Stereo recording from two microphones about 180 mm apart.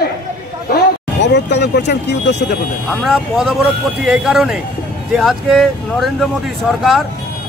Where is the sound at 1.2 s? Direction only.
70° left (ahead or behind).